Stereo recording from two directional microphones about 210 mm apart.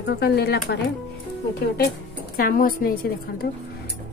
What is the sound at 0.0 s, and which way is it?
Speech, 50° left (ahead or behind).